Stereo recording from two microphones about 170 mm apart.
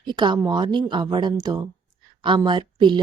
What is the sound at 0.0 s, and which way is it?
Speech, 25° right (ahead or behind).